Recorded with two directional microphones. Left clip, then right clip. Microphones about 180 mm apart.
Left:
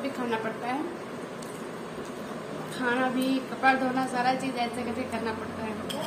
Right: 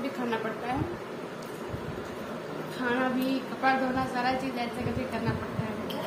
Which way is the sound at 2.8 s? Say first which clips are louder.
Left 2 dB; 20° left (ahead or behind).